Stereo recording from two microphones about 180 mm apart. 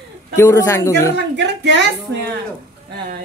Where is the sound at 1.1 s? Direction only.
75° right (ahead or behind).